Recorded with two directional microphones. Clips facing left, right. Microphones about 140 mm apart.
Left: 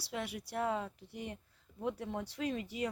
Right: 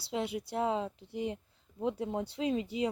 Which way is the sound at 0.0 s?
25° right (ahead or behind).